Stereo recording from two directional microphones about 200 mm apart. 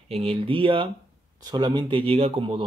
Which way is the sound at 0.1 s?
30° right (ahead or behind).